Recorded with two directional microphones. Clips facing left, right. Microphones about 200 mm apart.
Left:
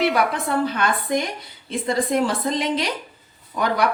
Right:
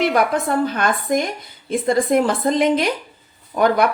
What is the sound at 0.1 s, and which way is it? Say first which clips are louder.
Speech: right 3 dB; 45° right (ahead or behind).